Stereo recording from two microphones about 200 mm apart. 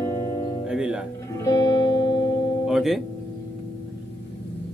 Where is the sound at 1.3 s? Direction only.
20° left (ahead or behind).